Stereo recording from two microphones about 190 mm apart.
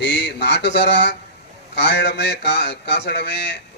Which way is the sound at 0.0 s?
65° left (ahead or behind).